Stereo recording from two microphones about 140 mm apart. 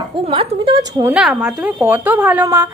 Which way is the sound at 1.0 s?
5° right (ahead or behind).